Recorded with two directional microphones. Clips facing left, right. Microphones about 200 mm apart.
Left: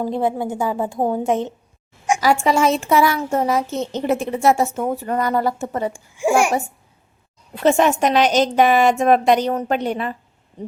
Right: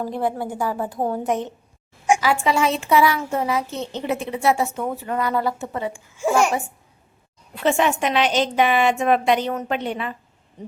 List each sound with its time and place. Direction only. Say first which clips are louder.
0.0 s a woman's voice: left 3 dB; 20° left (ahead or behind)
2.2 s a child's voice: left 3 dB; 45° left (ahead or behind)
6.1 s a child's voice: left 2 dB; 10° left (ahead or behind)
7.6 s a woman's voice: left 4 dB; 40° left (ahead or behind)
10.6 s hoot: left 5 dB; 30° left (ahead or behind)